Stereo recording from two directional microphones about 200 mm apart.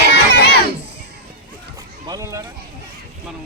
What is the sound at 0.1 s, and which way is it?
Crowd, 55° left (ahead or behind).